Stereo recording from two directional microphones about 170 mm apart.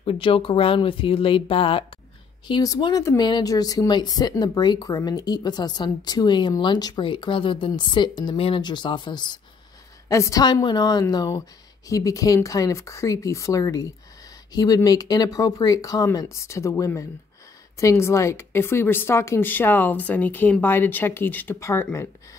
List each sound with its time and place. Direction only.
0.0 s speech: 30° left (ahead or behind); by 22.0 s 15° left (ahead or behind)